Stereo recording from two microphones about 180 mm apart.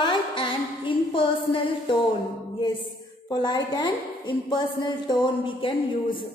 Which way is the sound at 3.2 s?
25° left (ahead or behind).